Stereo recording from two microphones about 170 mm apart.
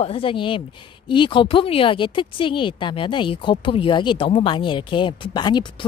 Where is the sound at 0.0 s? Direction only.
30° left (ahead or behind).